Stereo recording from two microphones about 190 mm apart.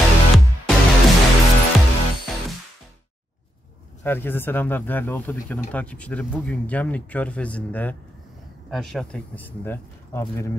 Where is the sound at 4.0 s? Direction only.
10° left (ahead or behind).